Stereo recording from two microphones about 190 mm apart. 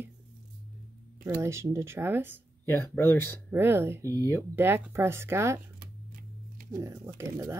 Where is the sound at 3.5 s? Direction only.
10° right (ahead or behind).